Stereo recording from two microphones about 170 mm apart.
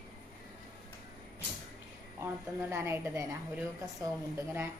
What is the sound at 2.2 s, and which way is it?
Speech, 15° right (ahead or behind).